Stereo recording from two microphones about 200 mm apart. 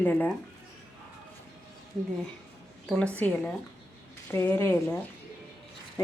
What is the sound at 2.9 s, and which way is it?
A woman's voice, 5° left (ahead or behind).